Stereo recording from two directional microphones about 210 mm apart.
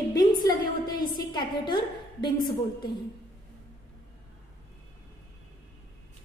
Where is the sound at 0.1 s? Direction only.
20° left (ahead or behind).